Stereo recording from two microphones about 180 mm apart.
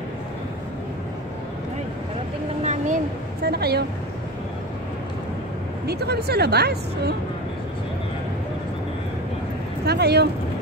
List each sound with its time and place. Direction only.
2.6 s a sound: 40° right (ahead or behind)
3.4 s speech: 60° right (ahead or behind)
5.9 s speech: 65° right (ahead or behind)
9.8 s speech: 65° right (ahead or behind)